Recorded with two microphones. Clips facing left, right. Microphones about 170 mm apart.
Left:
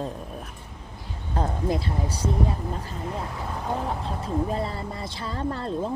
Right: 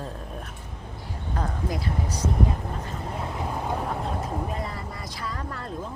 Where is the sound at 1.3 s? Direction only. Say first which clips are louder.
Left 4 dB; 25° left (ahead or behind).